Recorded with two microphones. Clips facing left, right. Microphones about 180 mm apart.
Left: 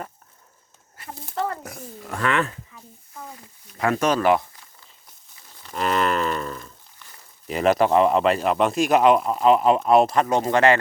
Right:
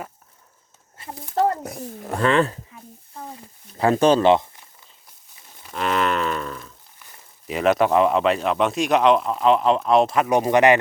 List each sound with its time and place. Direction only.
1.0 s speech: 30° right (ahead or behind)
3.8 s speech: 30° right (ahead or behind)
5.6 s cattle: centre (ahead or behind)
7.4 s speech: centre (ahead or behind)
10.2 s speech: 15° right (ahead or behind)